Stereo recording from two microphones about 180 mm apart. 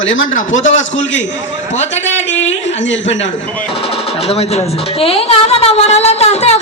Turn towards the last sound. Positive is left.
turn(degrees=35)  # may be behind; listen again after turning